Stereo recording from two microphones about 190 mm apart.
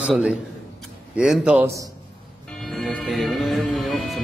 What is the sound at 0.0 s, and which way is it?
A man's voice, 5° right (ahead or behind).